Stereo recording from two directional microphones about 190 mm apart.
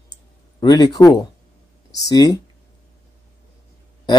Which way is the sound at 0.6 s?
20° left (ahead or behind).